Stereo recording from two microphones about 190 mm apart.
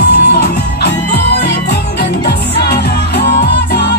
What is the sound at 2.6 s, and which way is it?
Music, 60° left (ahead or behind).